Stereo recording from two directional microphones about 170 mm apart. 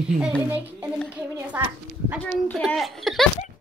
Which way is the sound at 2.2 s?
10° left (ahead or behind).